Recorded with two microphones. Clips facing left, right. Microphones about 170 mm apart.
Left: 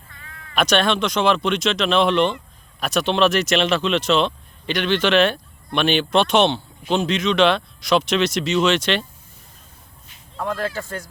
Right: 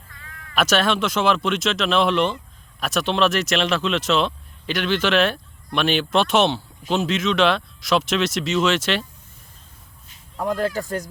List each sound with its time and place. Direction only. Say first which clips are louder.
0.5 s speech: left 1 dB; 5° right (ahead or behind)
10.5 s speech: right 3 dB; 40° right (ahead or behind)